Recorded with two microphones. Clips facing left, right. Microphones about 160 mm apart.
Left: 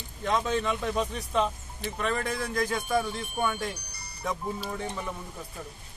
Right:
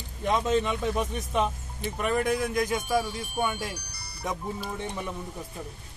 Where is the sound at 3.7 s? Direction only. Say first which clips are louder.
Right 3 dB; 75° right (ahead or behind).